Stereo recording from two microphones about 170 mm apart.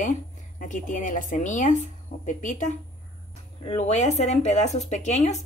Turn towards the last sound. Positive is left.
turn(degrees=40)  # may be behind; listen again after turning